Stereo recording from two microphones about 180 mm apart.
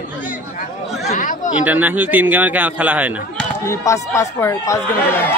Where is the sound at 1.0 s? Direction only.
45° left (ahead or behind).